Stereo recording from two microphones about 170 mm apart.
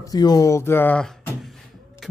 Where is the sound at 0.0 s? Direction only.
20° left (ahead or behind).